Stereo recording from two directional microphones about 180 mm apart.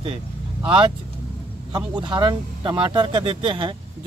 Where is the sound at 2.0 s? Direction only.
25° right (ahead or behind).